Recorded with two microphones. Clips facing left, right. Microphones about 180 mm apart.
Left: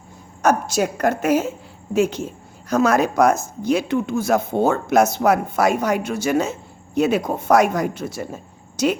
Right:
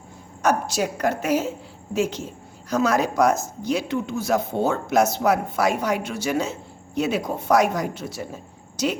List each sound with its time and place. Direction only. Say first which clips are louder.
0.4 s speech: left 3 dB; 50° left (ahead or behind)